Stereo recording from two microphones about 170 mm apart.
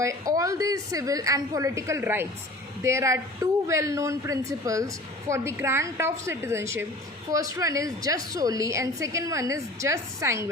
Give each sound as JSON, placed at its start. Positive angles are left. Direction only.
{"t": 0.0, "sound": "a woman's voice", "side_deg": -20}